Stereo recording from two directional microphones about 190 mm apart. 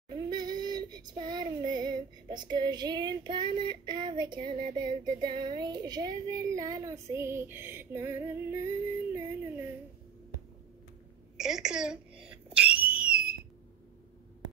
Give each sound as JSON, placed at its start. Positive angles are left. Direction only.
{"t": 0.1, "sound": "child singing", "side_deg": -20}
{"t": 11.3, "sound": "a woman's voice", "side_deg": -5}
{"t": 12.4, "sound": "a sound", "side_deg": -5}